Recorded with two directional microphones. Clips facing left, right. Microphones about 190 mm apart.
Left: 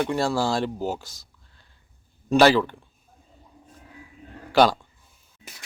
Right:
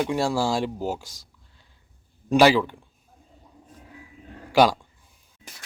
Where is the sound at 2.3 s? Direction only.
10° right (ahead or behind).